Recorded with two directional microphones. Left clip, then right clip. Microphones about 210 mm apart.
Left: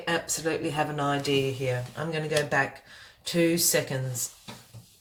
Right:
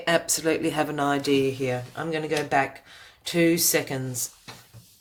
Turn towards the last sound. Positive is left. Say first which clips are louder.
# right 2 dB
turn(degrees=-40)  # may be behind; listen again after turning